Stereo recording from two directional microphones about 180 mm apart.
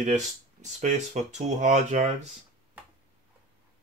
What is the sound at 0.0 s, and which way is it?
Speech, 40° right (ahead or behind).